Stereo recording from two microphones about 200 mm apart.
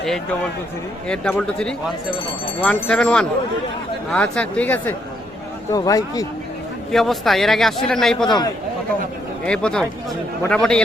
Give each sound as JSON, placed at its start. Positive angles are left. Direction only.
{"t": 1.0, "sound": "a man's voice", "side_deg": 5}
{"t": 6.9, "sound": "a man's voice", "side_deg": 0}
{"t": 9.5, "sound": "a man's voice", "side_deg": 5}